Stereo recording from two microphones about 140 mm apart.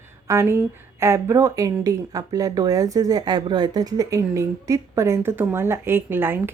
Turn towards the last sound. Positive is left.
turn(degrees=-15)  # may be behind; listen again after turning